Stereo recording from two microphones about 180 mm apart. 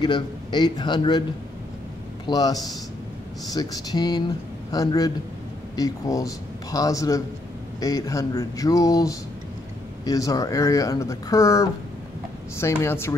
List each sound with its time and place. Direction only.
0.0 s speech: 25° left (ahead or behind)
2.2 s speech: 20° left (ahead or behind)